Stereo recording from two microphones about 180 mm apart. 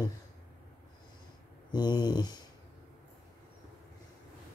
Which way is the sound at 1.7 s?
25° left (ahead or behind).